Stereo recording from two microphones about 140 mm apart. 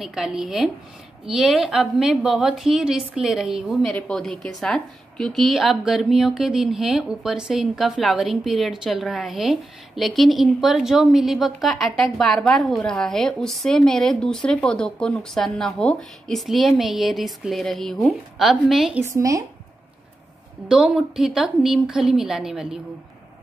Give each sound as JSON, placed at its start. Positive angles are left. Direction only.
{"t": 0.0, "sound": "a woman's voice", "side_deg": -5}
{"t": 19.0, "sound": "speech", "side_deg": -25}
{"t": 20.6, "sound": "a woman's voice", "side_deg": -5}